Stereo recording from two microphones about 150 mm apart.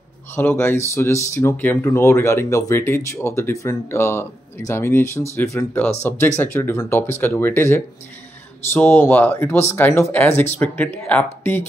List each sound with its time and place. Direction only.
0.4 s speech: 15° left (ahead or behind)